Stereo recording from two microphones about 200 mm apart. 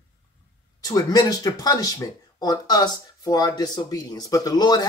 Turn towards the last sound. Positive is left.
turn(degrees=20)  # may be behind; listen again after turning